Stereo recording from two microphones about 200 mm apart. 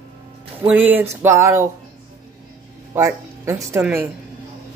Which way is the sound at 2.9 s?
15° right (ahead or behind).